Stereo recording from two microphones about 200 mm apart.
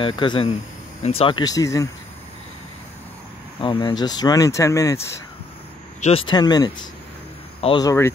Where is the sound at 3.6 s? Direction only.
25° left (ahead or behind).